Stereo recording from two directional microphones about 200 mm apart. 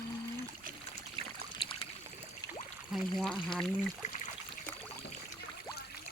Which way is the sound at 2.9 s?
Centre (ahead or behind).